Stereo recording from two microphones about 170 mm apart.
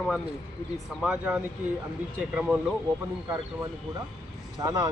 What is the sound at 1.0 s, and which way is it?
Speech, 5° right (ahead or behind).